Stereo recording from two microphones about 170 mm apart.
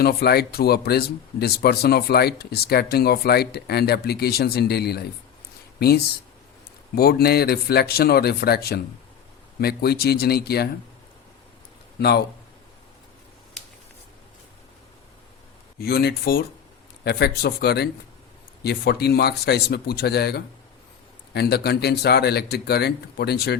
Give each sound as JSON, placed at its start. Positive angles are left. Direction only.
{"t": 0.0, "sound": "speech", "side_deg": 70}
{"t": 6.9, "sound": "speech", "side_deg": 65}
{"t": 11.9, "sound": "speech", "side_deg": 75}
{"t": 15.8, "sound": "speech", "side_deg": 70}